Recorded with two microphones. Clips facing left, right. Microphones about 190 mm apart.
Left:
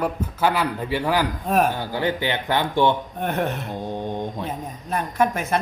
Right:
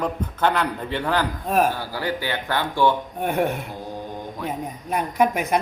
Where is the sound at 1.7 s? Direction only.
20° left (ahead or behind).